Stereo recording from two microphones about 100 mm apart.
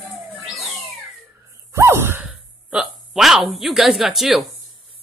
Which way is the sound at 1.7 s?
25° right (ahead or behind).